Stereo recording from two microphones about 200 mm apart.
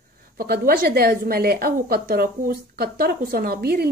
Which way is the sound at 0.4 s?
50° right (ahead or behind).